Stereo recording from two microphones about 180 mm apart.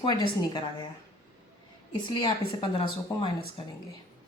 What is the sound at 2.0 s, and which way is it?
A woman's voice, 25° left (ahead or behind).